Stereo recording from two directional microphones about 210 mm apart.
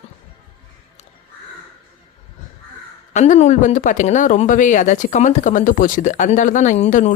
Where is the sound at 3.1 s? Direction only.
35° left (ahead or behind).